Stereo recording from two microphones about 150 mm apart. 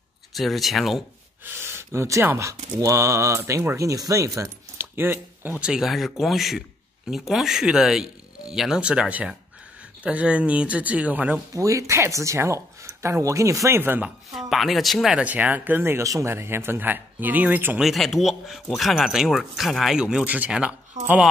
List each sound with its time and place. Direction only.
0.3 s speech: centre (ahead or behind)
1.4 s speech: 15° right (ahead or behind)
11.5 s speech: 20° right (ahead or behind)
14.5 s speech: centre (ahead or behind)
17.8 s speech: centre (ahead or behind)
21.0 s speech: 50° right (ahead or behind)